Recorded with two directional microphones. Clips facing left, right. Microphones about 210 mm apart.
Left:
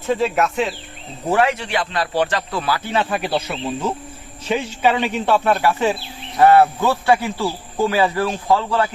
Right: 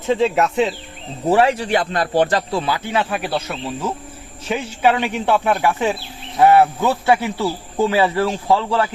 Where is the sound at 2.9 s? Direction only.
5° right (ahead or behind); by 8.0 s 25° right (ahead or behind).